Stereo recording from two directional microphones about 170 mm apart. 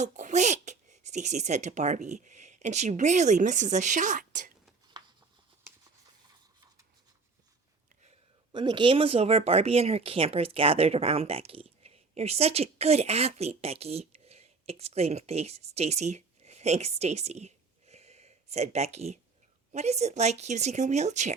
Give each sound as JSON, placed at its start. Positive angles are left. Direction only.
{"t": 0.0, "sound": "speech", "side_deg": -45}
{"t": 4.9, "sound": "a sound", "side_deg": -25}
{"t": 8.5, "sound": "a woman's voice", "side_deg": -30}